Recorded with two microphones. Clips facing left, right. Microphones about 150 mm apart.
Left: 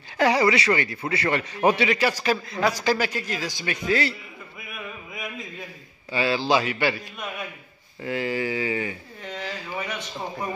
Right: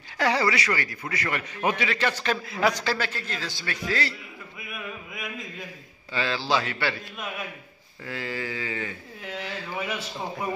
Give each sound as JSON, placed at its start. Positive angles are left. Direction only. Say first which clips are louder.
{"t": 0.2, "sound": "a man's voice", "louder": "left 4 dB", "side_deg": 15}
{"t": 0.6, "sound": "a man's voice", "louder": "left 5 dB", "side_deg": 25}
{"t": 1.9, "sound": "a man's voice", "louder": "left 4 dB", "side_deg": 10}
{"t": 2.4, "sound": "a man's voice", "louder": "even", "side_deg": -5}
{"t": 2.7, "sound": "a man's voice", "louder": "left 5 dB", "side_deg": 15}
{"t": 5.1, "sound": "a sound", "louder": "left 1 dB", "side_deg": 0}
{"t": 6.1, "sound": "a man's voice", "louder": "left 4 dB", "side_deg": 15}
{"t": 8.0, "sound": "a man's voice", "louder": "left 6 dB", "side_deg": 20}
{"t": 9.2, "sound": "a man's voice", "louder": "left 1 dB", "side_deg": -5}